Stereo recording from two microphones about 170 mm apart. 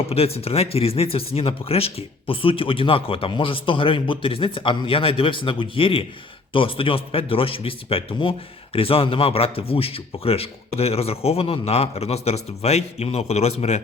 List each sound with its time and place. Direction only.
0.1 s speech: 35° left (ahead or behind)